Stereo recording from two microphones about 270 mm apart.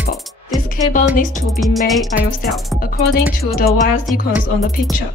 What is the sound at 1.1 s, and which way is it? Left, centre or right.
Music, left.